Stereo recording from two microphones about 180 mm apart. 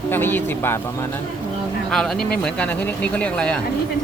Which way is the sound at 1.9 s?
Centre (ahead or behind).